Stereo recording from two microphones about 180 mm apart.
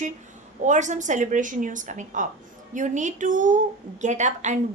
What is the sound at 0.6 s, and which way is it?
A woman's voice, 40° right (ahead or behind).